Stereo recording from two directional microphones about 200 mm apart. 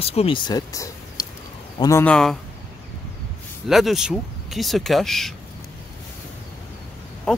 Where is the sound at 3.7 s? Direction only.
Centre (ahead or behind).